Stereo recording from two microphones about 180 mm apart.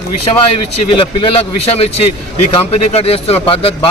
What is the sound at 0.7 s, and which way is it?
A man's voice, 30° left (ahead or behind).